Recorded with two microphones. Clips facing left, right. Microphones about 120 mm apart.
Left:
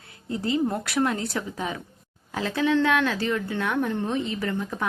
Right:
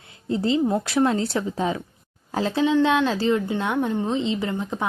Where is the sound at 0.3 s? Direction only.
25° right (ahead or behind).